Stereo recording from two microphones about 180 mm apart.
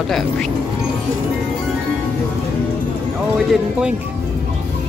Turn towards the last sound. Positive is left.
turn(degrees=-5)  # may be behind; listen again after turning